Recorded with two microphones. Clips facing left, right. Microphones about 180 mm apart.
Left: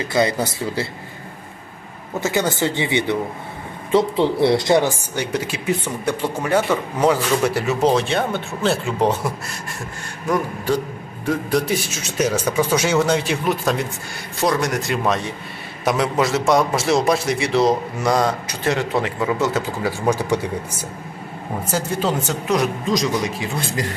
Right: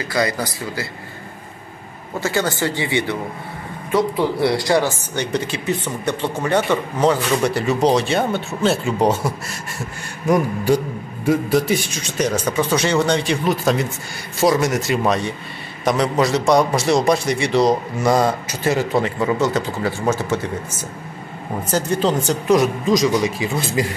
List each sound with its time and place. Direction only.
0.1 s speech: 25° left (ahead or behind)
2.1 s speech: 20° left (ahead or behind); by 9.3 s centre (ahead or behind)
10.2 s a man's voice: 10° right (ahead or behind)
11.2 s a man's voice: centre (ahead or behind)
21.6 s a man's voice: 5° left (ahead or behind)